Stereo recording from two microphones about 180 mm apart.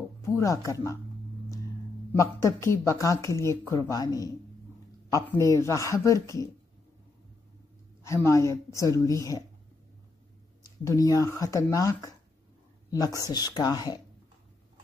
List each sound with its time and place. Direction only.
0.2 s speech: 15° left (ahead or behind)
2.1 s speech: 15° left (ahead or behind)
8.0 s speech: 15° left (ahead or behind)
10.8 s speech: 20° left (ahead or behind)